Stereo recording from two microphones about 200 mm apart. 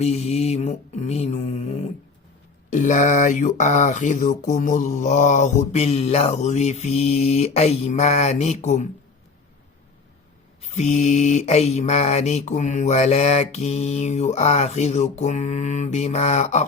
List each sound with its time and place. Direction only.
0.0 s mantra: 30° left (ahead or behind)
2.7 s speech: 40° left (ahead or behind)
10.6 s speech: 35° left (ahead or behind)